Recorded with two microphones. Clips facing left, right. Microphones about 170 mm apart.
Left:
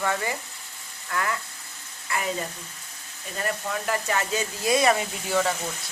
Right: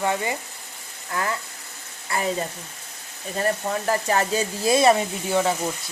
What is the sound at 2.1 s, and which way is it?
Speech, 35° right (ahead or behind).